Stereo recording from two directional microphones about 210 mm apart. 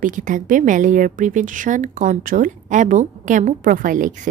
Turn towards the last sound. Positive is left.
turn(degrees=-40)  # may be behind; listen again after turning